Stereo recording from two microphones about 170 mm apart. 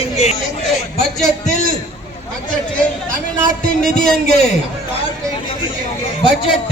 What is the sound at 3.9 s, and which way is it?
Speech, 45° left (ahead or behind).